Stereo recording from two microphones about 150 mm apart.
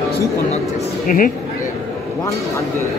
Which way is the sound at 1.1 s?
65° left (ahead or behind).